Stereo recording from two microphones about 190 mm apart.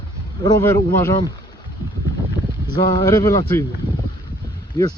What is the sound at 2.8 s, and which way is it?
Speech, 20° left (ahead or behind).